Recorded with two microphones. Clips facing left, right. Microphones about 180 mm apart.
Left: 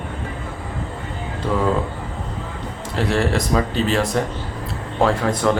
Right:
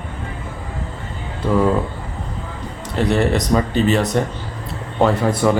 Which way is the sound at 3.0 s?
Centre (ahead or behind).